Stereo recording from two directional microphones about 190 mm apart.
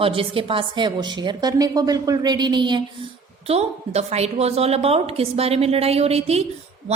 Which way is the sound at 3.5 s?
35° right (ahead or behind).